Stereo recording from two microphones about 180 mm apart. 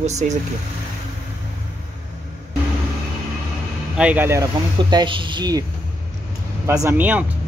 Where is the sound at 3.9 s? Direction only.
10° right (ahead or behind).